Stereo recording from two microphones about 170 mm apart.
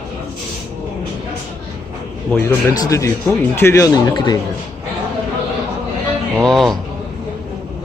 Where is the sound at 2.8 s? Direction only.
20° left (ahead or behind).